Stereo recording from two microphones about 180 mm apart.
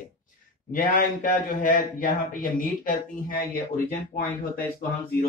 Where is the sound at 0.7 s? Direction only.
50° left (ahead or behind).